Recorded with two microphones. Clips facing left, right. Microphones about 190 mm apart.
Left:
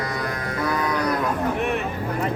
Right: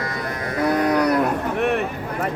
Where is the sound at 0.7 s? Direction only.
65° right (ahead or behind).